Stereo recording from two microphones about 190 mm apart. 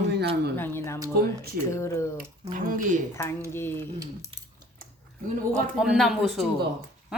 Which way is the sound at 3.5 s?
10° left (ahead or behind).